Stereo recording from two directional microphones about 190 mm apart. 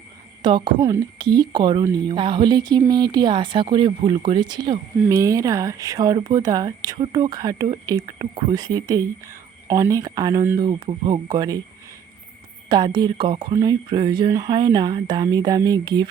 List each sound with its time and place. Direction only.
0.4 s a woman's voice: 25° right (ahead or behind)
12.6 s a woman's voice: 25° right (ahead or behind)